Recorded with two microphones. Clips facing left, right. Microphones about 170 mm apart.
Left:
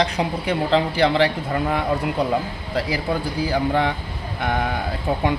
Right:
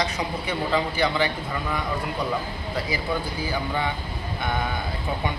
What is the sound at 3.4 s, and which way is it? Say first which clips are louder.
A woman's voice: left 6 dB; 80° left.